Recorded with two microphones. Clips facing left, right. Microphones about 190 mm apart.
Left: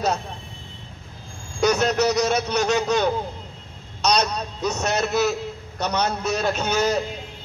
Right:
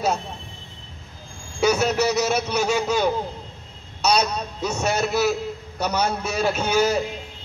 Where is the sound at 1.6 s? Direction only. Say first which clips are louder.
Even; 10° right (ahead or behind).